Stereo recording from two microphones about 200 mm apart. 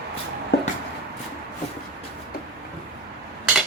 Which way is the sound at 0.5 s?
55° left (ahead or behind).